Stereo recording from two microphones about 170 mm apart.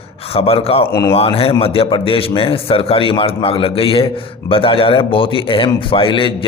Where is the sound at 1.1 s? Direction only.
35° left (ahead or behind).